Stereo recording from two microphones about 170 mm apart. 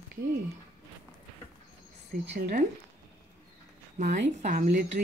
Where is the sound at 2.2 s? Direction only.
75° right (ahead or behind).